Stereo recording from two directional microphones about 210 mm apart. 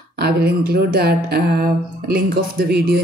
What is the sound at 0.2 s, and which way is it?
A woman's voice, 50° right (ahead or behind).